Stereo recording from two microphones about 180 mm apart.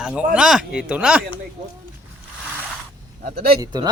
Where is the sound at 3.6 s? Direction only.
25° right (ahead or behind).